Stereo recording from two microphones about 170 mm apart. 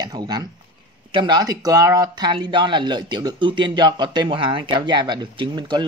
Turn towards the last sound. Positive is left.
turn(degrees=-25)  # may be behind; listen again after turning